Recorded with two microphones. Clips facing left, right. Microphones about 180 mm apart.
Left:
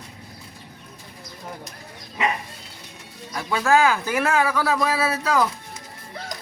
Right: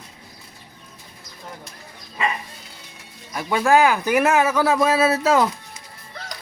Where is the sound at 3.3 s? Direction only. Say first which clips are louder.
Right 2 dB; 15° right (ahead or behind).